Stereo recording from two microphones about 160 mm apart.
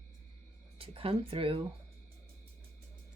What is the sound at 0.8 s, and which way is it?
Speech, 35° right (ahead or behind).